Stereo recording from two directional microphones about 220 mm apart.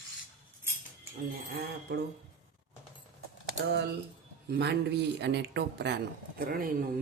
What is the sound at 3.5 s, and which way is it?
Speech, 50° right (ahead or behind).